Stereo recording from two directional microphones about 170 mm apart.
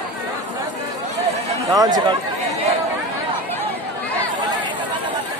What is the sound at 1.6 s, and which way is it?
Speech, 20° right (ahead or behind).